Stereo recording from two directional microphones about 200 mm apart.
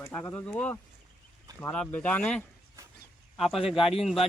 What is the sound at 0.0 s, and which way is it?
Speech, 10° left (ahead or behind).